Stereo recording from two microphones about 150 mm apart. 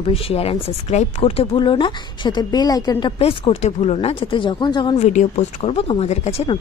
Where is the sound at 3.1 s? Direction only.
40° left (ahead or behind).